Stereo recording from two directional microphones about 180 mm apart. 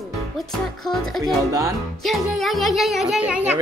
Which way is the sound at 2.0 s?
Centre (ahead or behind).